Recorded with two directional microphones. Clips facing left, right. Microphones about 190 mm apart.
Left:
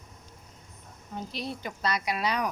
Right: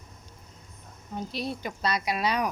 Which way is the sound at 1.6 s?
20° right (ahead or behind).